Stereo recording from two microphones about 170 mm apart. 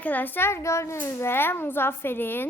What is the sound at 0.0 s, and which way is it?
A child's voice, 10° left (ahead or behind).